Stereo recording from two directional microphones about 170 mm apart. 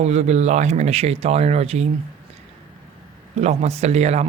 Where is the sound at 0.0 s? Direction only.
40° right (ahead or behind).